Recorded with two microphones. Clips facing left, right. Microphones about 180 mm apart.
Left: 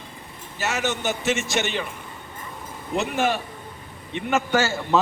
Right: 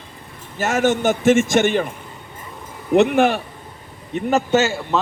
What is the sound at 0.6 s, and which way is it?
A man's voice, 50° right (ahead or behind).